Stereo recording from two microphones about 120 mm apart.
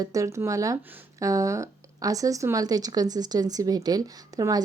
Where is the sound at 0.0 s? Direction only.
30° right (ahead or behind).